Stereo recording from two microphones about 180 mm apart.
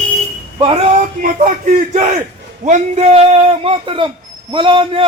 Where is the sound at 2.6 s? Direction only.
40° right (ahead or behind).